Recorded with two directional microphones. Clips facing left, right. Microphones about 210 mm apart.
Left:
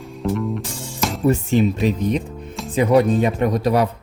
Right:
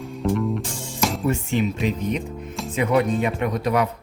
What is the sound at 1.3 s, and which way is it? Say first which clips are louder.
Speech: left 5 dB; 35° left (ahead or behind).